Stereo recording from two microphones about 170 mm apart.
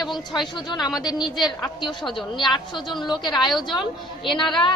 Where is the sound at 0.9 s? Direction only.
Centre (ahead or behind).